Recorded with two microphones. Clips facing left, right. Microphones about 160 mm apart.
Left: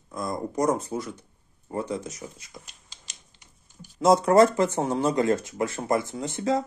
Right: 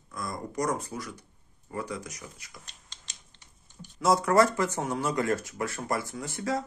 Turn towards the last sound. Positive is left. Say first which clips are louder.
# left 5 dB
turn(degrees=25)  # may be behind; listen again after turning